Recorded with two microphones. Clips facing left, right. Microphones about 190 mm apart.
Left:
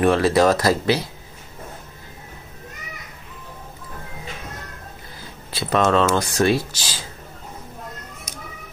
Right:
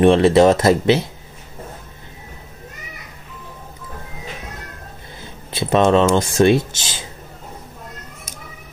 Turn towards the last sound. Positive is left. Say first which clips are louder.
# right 5 dB
turn(degrees=-20)  # may be behind; listen again after turning